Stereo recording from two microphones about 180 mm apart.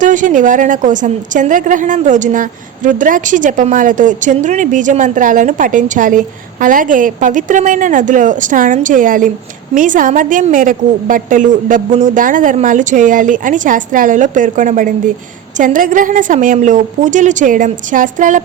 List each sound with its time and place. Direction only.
0.0 s a woman's voice: 45° right (ahead or behind)